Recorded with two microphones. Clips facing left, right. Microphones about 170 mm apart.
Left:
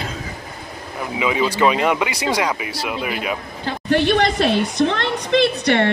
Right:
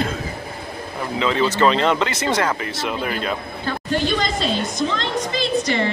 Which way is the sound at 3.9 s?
65° left (ahead or behind).